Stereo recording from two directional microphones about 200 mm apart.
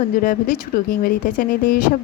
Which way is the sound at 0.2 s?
45° left (ahead or behind).